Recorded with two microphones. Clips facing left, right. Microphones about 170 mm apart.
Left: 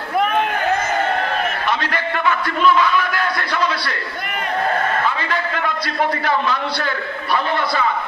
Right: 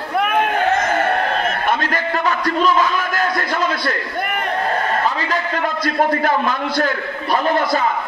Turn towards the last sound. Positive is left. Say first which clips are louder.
# right 3 dB
turn(degrees=-45)  # may be behind; listen again after turning